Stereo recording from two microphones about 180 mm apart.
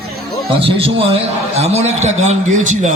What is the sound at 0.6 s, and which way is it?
A man's voice, 30° right (ahead or behind).